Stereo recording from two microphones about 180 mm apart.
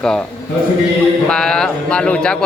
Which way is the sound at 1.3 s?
5° left (ahead or behind).